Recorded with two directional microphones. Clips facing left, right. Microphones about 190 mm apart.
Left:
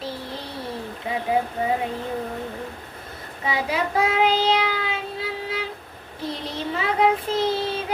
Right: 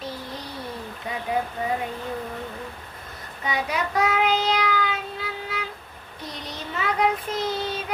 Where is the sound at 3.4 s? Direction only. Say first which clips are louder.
Left 2 dB; 30° left (ahead or behind).